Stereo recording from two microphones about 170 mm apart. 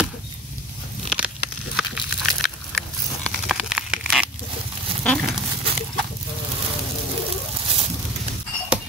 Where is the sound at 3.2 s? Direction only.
Centre (ahead or behind).